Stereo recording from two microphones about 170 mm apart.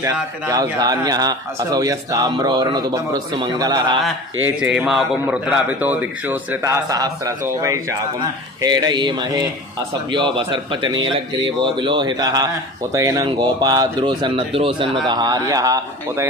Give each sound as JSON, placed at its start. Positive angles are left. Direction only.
{"t": 0.0, "sound": "a man's voice", "side_deg": -20}
{"t": 4.6, "sound": "a man's voice", "side_deg": -10}